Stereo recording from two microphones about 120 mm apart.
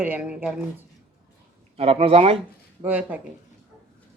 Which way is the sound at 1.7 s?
55° right (ahead or behind).